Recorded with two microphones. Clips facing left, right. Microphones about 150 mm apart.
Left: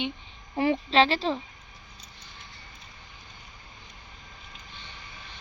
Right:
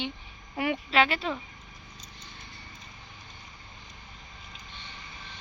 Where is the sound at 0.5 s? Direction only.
30° left (ahead or behind).